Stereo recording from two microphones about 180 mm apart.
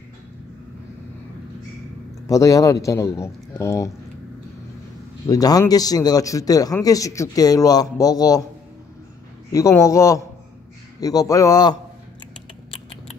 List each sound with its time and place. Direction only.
2.2 s speech: 20° left (ahead or behind)
5.2 s a man's voice: 20° left (ahead or behind)
9.5 s a man's voice: 15° left (ahead or behind)